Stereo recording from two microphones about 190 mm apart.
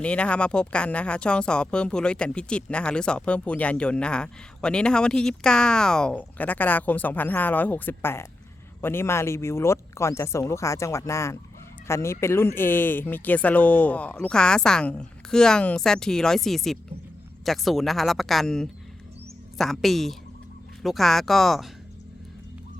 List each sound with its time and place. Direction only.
0.0 s speech: 5° left (ahead or behind)